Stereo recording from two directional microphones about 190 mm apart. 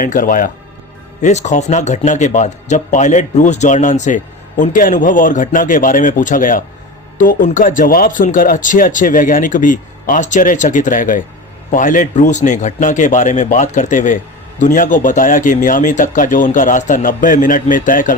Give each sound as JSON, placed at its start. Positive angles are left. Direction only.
{"t": 0.0, "sound": "a man's voice", "side_deg": 45}